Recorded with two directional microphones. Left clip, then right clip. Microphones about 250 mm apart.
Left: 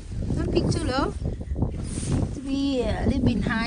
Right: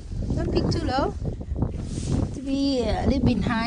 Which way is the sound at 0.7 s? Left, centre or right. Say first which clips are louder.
Right 1 dB; centre.